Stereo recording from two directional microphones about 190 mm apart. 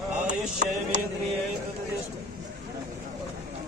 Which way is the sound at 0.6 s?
40° right (ahead or behind).